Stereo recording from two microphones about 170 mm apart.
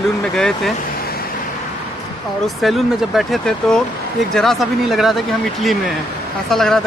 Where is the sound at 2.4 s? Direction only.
Centre (ahead or behind).